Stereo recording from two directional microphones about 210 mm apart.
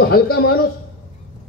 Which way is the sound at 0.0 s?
45° left (ahead or behind).